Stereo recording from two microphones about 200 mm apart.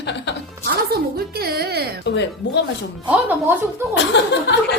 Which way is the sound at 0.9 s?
50° right (ahead or behind).